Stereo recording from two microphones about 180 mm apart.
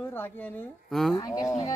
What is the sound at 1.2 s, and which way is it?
Speech, 20° left (ahead or behind).